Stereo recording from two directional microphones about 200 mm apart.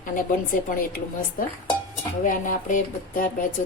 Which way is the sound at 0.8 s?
45° left (ahead or behind).